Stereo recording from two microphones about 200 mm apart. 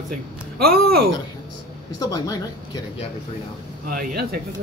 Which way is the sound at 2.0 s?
15° left (ahead or behind).